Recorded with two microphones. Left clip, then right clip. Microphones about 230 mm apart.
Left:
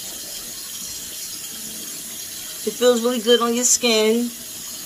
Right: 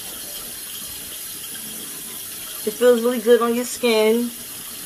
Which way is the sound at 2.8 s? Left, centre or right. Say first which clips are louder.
Right 1 dB; centre.